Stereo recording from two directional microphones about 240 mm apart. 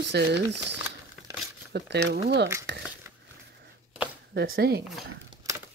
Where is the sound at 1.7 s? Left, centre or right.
Right.